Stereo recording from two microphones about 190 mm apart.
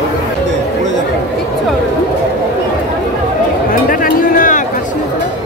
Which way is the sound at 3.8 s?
50° left (ahead or behind).